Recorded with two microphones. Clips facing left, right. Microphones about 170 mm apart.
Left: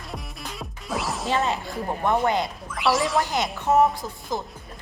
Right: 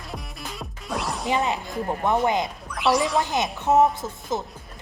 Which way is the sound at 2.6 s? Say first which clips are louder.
Right 2 dB; centre (ahead or behind).